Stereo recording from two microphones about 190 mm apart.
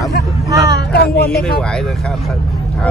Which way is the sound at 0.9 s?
55° left (ahead or behind).